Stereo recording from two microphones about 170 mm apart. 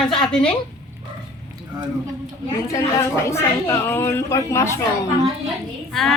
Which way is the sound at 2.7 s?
15° left (ahead or behind).